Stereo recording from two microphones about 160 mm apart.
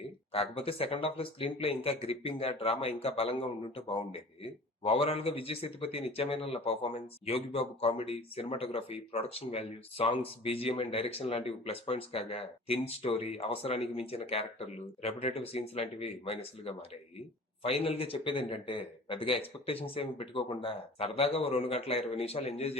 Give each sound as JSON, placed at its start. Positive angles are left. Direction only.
{"t": 0.3, "sound": "speech", "side_deg": 35}